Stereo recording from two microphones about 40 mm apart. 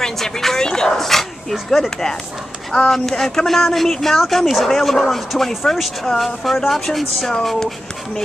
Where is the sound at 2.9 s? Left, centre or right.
Centre.